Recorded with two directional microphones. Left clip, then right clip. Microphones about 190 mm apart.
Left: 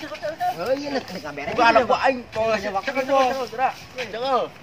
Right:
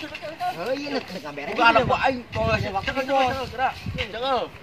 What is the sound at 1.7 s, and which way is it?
Speech, centre (ahead or behind).